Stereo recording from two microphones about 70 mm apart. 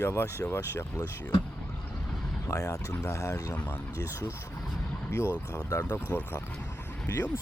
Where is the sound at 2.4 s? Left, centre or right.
Left.